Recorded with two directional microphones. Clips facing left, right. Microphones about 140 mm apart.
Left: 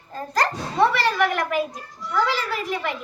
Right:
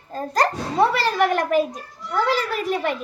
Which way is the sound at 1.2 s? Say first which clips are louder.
Right 3 dB; 40° right (ahead or behind).